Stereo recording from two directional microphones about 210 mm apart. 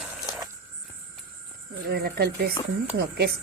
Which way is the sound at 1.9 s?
50° right (ahead or behind).